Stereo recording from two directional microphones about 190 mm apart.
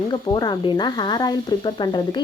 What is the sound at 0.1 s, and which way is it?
Speech, 20° left (ahead or behind).